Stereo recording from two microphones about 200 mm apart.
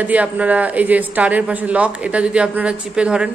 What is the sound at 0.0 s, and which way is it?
A woman's voice, 5° right (ahead or behind).